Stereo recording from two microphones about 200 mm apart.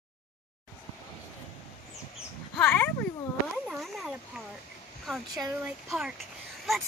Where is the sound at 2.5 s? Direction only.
10° left (ahead or behind).